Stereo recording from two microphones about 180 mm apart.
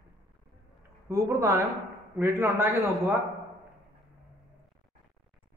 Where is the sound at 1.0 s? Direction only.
15° right (ahead or behind).